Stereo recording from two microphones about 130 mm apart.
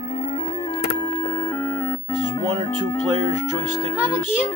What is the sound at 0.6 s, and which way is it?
Music, 30° left (ahead or behind).